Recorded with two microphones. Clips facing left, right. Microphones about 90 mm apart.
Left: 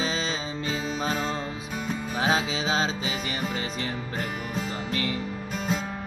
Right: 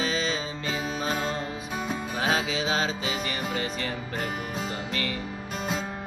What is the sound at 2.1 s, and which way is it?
Music, 25° left (ahead or behind).